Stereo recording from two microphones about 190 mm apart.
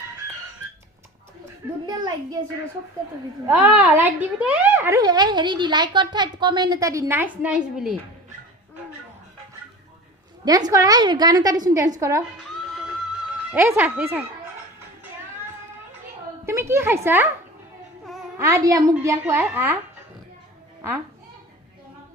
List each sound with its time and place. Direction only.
1.9 s a woman's voice: 20° right (ahead or behind)
3.4 s speech: 10° right (ahead or behind)
10.4 s a woman's voice: 20° right (ahead or behind)
12.7 s music: centre (ahead or behind)
13.5 s speech: 15° right (ahead or behind)
16.5 s a child's voice: 15° right (ahead or behind)
18.0 s a sound: centre (ahead or behind)
18.3 s speech: 15° right (ahead or behind)